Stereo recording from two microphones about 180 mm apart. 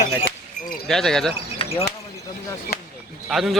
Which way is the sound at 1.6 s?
35° left (ahead or behind).